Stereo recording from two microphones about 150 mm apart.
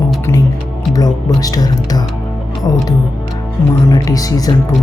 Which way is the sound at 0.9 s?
25° left (ahead or behind).